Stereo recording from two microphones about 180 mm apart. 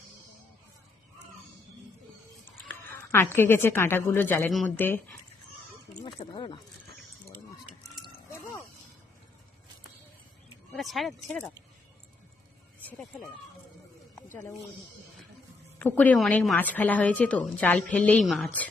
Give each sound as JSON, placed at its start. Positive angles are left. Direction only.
{"t": 2.6, "sound": "a woman's voice", "side_deg": 15}
{"t": 6.0, "sound": "a sound", "side_deg": 25}
{"t": 10.7, "sound": "speech", "side_deg": 0}
{"t": 12.8, "sound": "speech", "side_deg": 5}
{"t": 15.8, "sound": "a woman's voice", "side_deg": 10}